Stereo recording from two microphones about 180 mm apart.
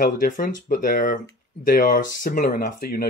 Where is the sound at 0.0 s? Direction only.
45° left (ahead or behind).